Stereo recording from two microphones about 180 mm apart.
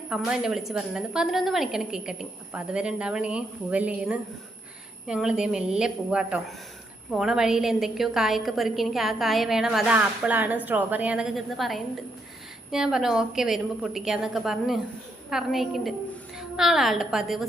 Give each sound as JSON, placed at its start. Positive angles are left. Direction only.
{"t": 0.1, "sound": "a woman's voice", "side_deg": -5}